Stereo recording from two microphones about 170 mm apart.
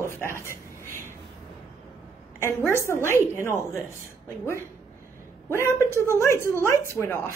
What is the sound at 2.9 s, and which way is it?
Speech, 15° left (ahead or behind).